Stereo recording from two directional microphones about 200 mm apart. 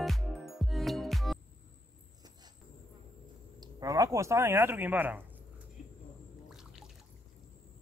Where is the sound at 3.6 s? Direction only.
15° right (ahead or behind).